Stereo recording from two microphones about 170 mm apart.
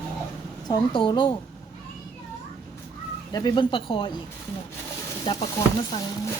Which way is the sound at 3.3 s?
25° left (ahead or behind).